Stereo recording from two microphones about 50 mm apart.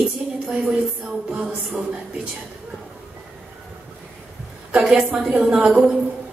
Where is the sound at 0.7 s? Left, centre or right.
Centre.